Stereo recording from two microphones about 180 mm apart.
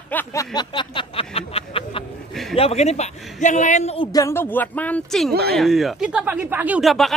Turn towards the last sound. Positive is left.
turn(degrees=0)  # may be behind; listen again after turning